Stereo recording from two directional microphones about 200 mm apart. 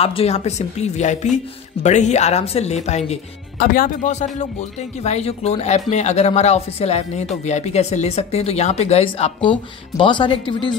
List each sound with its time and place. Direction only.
0.0 s speech: 30° left (ahead or behind)
3.5 s speech: 45° left (ahead or behind); by 10.8 s 25° left (ahead or behind)